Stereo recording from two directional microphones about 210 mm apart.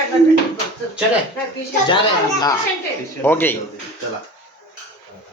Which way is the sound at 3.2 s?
10° left (ahead or behind).